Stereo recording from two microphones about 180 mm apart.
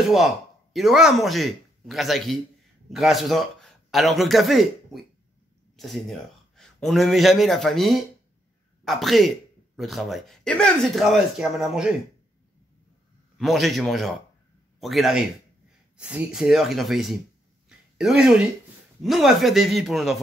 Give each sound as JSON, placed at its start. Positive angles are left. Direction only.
{"t": 0.7, "sound": "a man's voice", "side_deg": 0}
{"t": 13.4, "sound": "speech", "side_deg": 0}
{"t": 17.6, "sound": "a sound", "side_deg": -5}
{"t": 19.0, "sound": "speech", "side_deg": 0}